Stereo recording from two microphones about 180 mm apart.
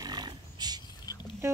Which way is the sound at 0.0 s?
25° right (ahead or behind).